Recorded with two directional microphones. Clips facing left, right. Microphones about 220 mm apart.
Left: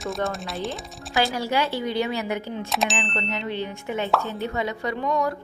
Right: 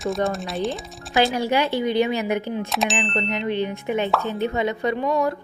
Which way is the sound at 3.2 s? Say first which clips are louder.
Right 5 dB; 15° right (ahead or behind).